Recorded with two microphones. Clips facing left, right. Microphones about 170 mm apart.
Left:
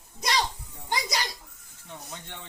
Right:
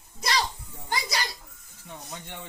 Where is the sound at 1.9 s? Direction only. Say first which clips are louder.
Right 1 dB; 15° right (ahead or behind).